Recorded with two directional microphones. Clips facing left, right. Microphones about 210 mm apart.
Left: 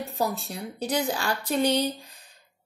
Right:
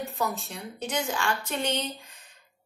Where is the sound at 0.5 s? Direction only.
35° left (ahead or behind).